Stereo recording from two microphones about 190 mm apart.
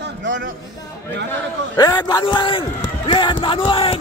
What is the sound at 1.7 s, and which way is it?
Speech, 20° left (ahead or behind).